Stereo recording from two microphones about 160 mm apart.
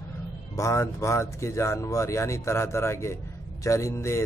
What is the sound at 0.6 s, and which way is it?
Speech, 20° left (ahead or behind).